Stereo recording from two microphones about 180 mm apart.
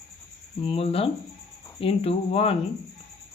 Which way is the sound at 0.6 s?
30° left (ahead or behind).